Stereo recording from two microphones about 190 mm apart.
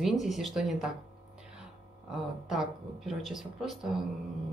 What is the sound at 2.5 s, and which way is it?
A woman's voice, centre (ahead or behind).